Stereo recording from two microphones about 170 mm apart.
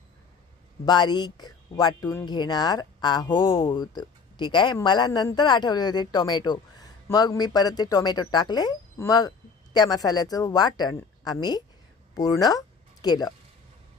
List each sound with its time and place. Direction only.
0.9 s speech: 25° left (ahead or behind)